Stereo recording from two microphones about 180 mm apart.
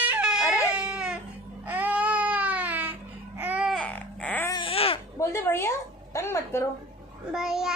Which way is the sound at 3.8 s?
10° left (ahead or behind).